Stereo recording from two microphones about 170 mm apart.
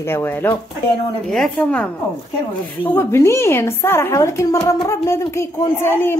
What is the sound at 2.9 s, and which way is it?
A woman's voice, 15° left (ahead or behind).